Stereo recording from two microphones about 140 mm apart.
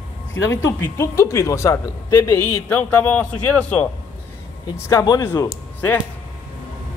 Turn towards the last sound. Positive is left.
turn(degrees=15)  # may be behind; listen again after turning